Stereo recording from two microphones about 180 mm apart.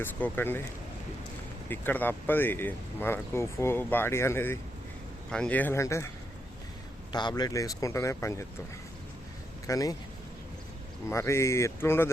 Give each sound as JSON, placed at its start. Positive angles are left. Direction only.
{"t": 0.0, "sound": "speech", "side_deg": 10}
{"t": 1.7, "sound": "speech", "side_deg": 10}
{"t": 7.1, "sound": "speech", "side_deg": 25}
{"t": 9.6, "sound": "speech", "side_deg": 20}
{"t": 11.1, "sound": "speech", "side_deg": 15}